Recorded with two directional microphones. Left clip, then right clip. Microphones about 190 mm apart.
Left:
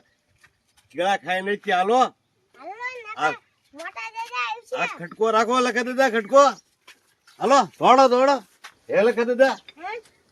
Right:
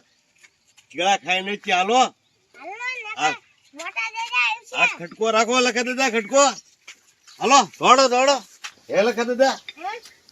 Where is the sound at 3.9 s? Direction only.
20° left (ahead or behind).